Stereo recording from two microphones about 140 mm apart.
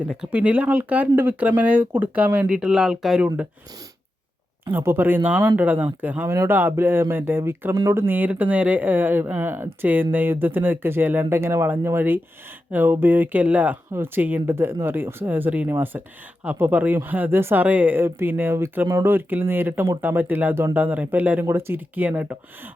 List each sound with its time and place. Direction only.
0.0 s speech: 10° right (ahead or behind)
4.6 s speech: 15° right (ahead or behind)